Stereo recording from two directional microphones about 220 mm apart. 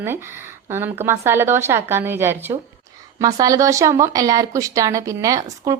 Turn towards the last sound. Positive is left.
turn(degrees=-15)  # may be behind; listen again after turning